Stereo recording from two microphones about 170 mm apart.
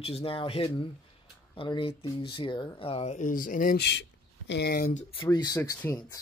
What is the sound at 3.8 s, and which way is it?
Speech, 90° left.